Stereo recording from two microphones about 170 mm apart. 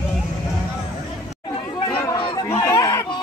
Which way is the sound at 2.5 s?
20° left (ahead or behind).